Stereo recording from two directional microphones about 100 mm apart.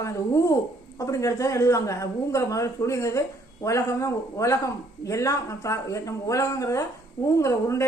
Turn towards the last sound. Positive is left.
turn(degrees=30)  # may be behind; listen again after turning